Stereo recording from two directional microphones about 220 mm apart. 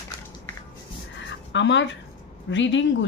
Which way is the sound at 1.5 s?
55° left (ahead or behind).